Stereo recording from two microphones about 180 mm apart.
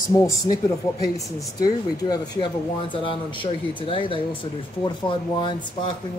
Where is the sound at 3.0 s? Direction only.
30° left (ahead or behind).